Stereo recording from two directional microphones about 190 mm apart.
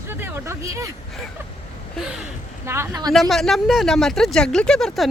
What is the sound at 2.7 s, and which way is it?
Speech, 15° right (ahead or behind).